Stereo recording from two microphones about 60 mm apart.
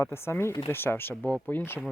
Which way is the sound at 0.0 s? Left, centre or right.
Left.